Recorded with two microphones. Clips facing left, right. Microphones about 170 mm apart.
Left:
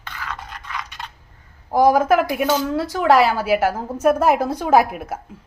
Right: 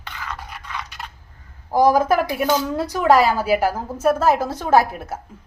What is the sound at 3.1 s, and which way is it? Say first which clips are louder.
Speech: even; 40° right (ahead or behind).